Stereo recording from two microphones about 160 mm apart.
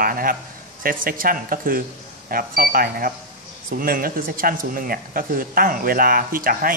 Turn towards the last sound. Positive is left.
turn(degrees=-60)  # may be behind; listen again after turning